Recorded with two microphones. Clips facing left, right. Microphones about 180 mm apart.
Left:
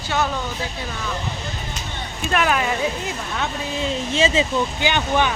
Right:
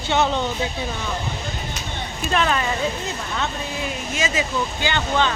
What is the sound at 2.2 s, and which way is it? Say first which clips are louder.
Speech: left 1 dB; 5° left (ahead or behind).